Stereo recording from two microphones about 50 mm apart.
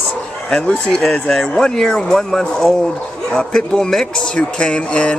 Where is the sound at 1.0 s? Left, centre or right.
Centre.